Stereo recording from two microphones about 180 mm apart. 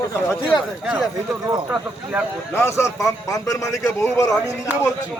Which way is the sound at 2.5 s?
15° left (ahead or behind).